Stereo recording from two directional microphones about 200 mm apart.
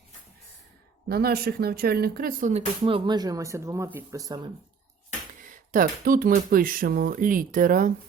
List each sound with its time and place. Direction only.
1.0 s speech: 50° right (ahead or behind); by 4.5 s 20° right (ahead or behind)
5.7 s speech: 45° right (ahead or behind)